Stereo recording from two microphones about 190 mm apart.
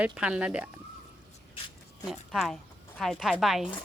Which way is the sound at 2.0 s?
Centre (ahead or behind).